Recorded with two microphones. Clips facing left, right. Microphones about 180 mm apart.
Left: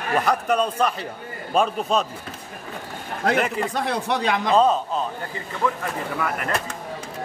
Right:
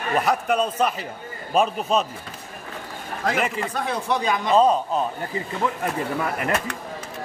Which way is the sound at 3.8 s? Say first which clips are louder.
Right 1 dB; 70° left (ahead or behind).